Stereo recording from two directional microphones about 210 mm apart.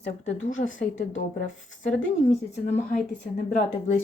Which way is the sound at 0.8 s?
35° left (ahead or behind).